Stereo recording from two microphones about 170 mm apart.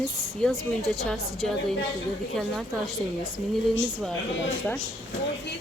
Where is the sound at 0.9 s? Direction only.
Centre (ahead or behind).